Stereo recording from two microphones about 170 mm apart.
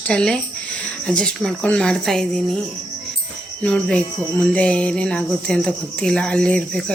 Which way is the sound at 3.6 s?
5° left (ahead or behind).